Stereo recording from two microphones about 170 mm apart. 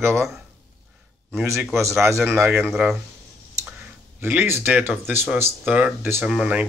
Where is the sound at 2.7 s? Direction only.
Centre (ahead or behind).